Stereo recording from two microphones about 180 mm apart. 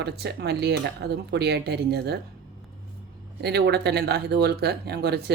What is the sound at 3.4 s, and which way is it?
Speech, 65° right (ahead or behind).